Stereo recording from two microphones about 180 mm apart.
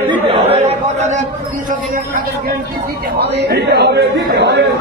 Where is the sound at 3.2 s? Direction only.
65° right (ahead or behind).